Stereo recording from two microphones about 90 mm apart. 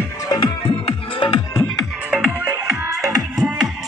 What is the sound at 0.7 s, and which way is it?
Music, 75° left (ahead or behind).